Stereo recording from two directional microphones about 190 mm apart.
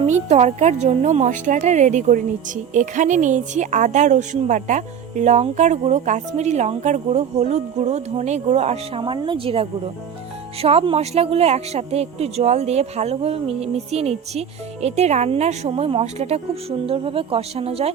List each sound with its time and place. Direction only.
0.0 s a woman's voice: 35° right (ahead or behind)